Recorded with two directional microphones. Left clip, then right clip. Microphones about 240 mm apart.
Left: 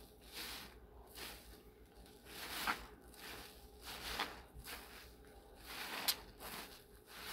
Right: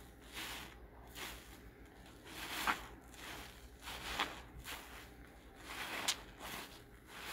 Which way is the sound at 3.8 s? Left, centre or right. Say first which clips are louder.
Right 3 dB; centre.